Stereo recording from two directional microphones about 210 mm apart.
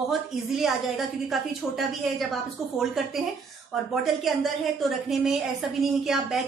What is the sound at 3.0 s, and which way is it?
A woman's voice, centre (ahead or behind).